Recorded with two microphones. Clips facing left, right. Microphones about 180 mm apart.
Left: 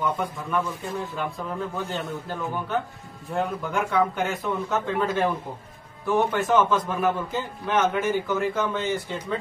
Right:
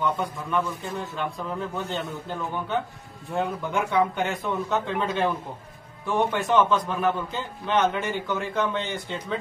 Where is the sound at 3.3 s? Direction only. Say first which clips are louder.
Even; centre (ahead or behind).